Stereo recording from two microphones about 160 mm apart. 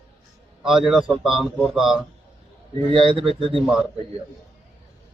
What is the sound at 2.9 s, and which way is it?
Speech, 35° right (ahead or behind).